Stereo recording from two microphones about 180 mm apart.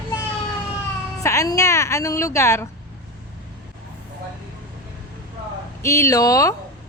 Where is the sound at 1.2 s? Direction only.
15° left (ahead or behind).